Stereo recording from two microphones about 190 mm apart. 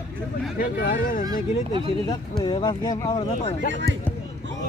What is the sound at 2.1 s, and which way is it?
Speech, 25° left (ahead or behind).